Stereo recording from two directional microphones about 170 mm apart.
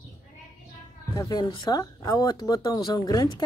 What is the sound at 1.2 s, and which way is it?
Speech, 25° left (ahead or behind).